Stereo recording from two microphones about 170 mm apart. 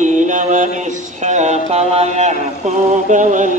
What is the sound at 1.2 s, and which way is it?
Mantra, 45° right (ahead or behind).